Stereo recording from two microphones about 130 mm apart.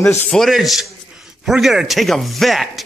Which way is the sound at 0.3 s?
Centre (ahead or behind).